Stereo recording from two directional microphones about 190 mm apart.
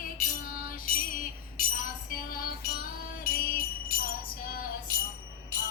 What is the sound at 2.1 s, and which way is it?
Music, 50° left (ahead or behind).